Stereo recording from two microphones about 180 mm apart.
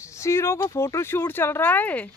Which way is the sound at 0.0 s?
15° left (ahead or behind).